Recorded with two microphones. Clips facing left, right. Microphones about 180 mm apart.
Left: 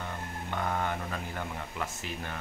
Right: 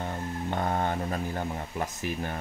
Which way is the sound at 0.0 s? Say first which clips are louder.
Right 6 dB; 40° right (ahead or behind).